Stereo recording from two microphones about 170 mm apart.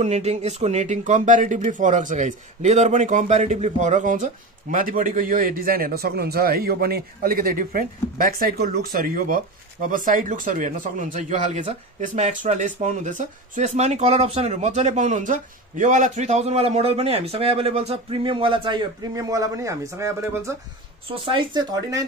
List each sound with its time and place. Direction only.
0.0 s a man's voice: 40° right (ahead or behind); by 20.5 s 15° right (ahead or behind)
21.1 s a man's voice: 30° right (ahead or behind)